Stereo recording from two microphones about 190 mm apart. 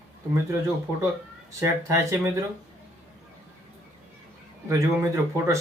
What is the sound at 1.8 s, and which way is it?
Speech, 15° right (ahead or behind).